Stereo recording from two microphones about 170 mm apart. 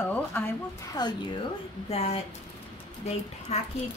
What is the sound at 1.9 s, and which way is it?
Speech, 35° left (ahead or behind).